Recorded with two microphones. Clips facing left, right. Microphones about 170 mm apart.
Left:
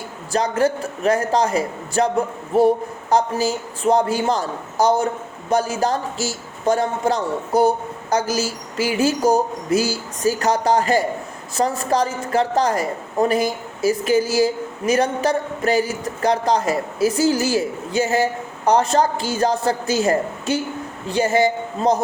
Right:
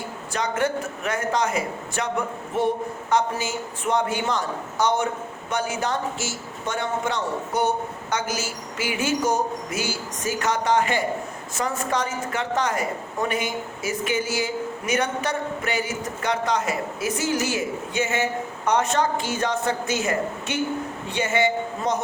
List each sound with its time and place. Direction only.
0.3 s a woman's voice: 35° left (ahead or behind)